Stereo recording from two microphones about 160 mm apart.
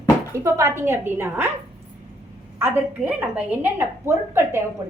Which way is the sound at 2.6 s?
10° right (ahead or behind).